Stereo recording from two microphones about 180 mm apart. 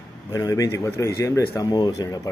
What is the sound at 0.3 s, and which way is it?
Speech, 20° left (ahead or behind).